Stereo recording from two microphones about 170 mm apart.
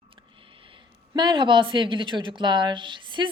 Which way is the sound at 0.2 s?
30° right (ahead or behind).